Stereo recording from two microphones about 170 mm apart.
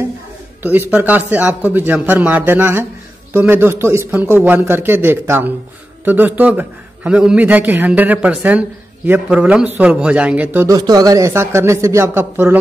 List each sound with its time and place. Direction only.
0.6 s a man's voice: 10° right (ahead or behind)